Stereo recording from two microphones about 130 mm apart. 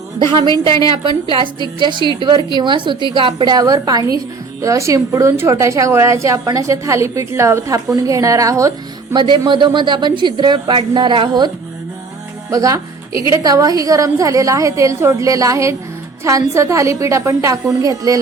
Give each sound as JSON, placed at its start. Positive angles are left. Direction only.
{"t": 0.2, "sound": "a woman's voice", "side_deg": -35}